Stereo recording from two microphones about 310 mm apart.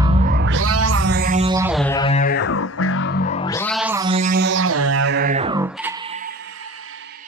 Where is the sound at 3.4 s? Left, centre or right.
Centre; by 5.1 s right.